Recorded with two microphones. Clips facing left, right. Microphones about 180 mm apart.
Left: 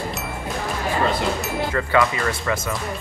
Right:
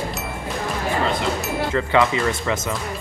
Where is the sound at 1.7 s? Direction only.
20° right (ahead or behind).